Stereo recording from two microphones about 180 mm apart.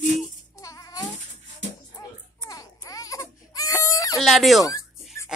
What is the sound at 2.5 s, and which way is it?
Baby cry, 20° left (ahead or behind).